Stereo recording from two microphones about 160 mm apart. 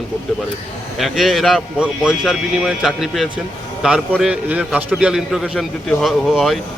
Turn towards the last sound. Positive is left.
turn(degrees=0)  # may be behind; listen again after turning